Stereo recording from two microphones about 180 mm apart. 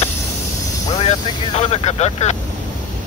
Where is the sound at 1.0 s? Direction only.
35° left (ahead or behind).